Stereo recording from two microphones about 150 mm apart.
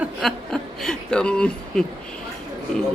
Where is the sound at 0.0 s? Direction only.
Centre (ahead or behind).